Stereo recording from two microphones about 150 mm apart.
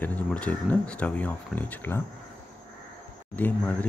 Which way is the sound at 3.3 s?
10° left (ahead or behind).